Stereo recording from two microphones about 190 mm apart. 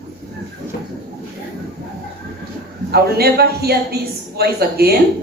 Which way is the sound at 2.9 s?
55° right (ahead or behind).